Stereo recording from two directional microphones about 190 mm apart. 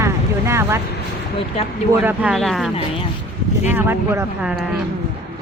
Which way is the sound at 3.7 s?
10° right (ahead or behind).